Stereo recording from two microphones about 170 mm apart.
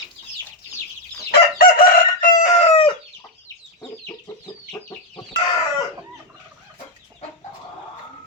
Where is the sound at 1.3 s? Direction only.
60° left (ahead or behind); by 2.9 s 35° left (ahead or behind).